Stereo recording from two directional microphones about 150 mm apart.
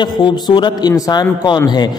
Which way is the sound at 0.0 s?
30° left (ahead or behind).